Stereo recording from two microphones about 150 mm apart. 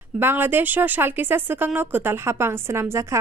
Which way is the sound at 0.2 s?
15° right (ahead or behind).